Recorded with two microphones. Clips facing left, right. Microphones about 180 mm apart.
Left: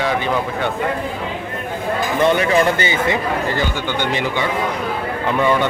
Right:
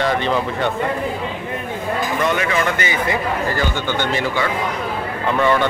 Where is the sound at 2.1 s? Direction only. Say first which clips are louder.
Left 6 dB; 30° left (ahead or behind).